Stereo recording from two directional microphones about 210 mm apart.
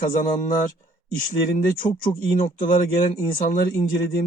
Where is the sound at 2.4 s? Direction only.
40° left (ahead or behind).